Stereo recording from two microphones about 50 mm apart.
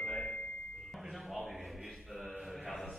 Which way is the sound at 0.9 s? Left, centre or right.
Centre.